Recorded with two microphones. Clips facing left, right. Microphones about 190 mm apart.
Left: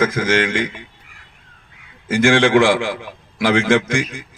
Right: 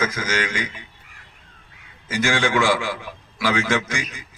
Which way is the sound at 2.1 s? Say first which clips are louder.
Left 8 dB; 55° left (ahead or behind).